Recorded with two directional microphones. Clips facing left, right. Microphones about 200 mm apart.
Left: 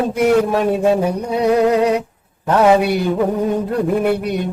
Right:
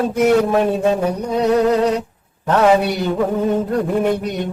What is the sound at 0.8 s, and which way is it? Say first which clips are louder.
Music: left 2 dB; 10° left (ahead or behind).